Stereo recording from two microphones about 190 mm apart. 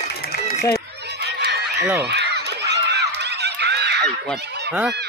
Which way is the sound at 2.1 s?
60° right (ahead or behind).